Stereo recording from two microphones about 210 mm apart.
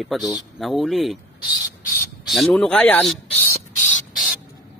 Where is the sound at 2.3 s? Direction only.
Centre (ahead or behind).